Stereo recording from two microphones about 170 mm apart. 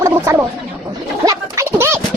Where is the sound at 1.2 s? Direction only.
20° right (ahead or behind).